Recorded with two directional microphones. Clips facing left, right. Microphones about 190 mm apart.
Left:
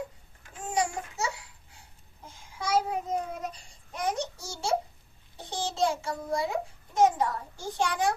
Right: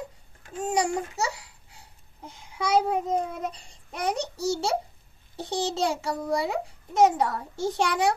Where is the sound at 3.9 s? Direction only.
70° right (ahead or behind).